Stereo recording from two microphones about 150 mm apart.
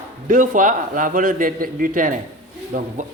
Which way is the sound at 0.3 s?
60° right (ahead or behind).